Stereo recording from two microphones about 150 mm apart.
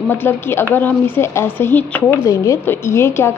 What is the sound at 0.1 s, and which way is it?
A woman's voice, 15° left (ahead or behind).